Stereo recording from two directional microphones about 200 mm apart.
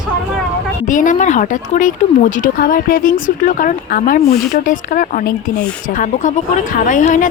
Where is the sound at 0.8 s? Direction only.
40° left (ahead or behind).